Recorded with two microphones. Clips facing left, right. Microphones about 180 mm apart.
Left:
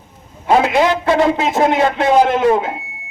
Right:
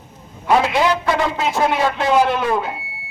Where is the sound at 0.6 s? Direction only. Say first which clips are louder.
Left 3 dB; 55° left (ahead or behind).